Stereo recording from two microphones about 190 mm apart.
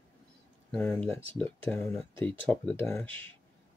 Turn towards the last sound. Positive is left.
turn(degrees=10)  # may be behind; listen again after turning